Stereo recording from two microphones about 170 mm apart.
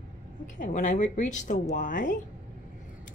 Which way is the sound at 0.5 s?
45° left (ahead or behind).